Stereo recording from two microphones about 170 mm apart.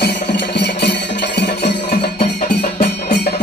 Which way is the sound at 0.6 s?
80° left.